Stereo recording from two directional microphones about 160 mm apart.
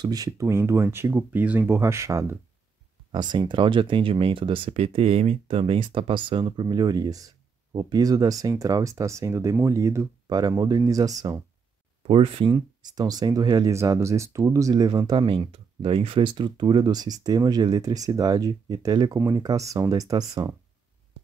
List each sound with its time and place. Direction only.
0.0 s speech: 25° right (ahead or behind)
3.1 s speech: 30° right (ahead or behind)
12.0 s speech: 35° right (ahead or behind)